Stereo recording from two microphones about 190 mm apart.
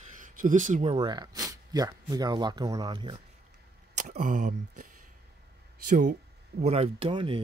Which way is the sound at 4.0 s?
40° right (ahead or behind).